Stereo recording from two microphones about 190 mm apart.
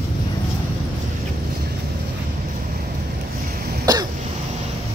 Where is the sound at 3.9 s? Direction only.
20° right (ahead or behind).